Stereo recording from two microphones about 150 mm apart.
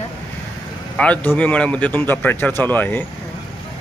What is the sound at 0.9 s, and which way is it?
A man's voice, 10° left (ahead or behind).